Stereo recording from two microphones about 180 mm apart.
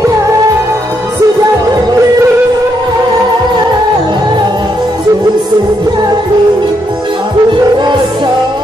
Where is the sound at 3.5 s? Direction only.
25° right (ahead or behind).